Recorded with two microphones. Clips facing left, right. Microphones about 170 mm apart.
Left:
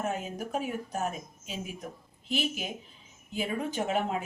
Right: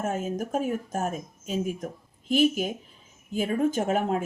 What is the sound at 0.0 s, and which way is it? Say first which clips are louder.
Speech: right 4 dB; 45° right (ahead or behind).